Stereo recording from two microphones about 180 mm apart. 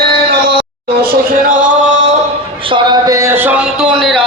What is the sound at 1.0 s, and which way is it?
Speech, 55° right (ahead or behind).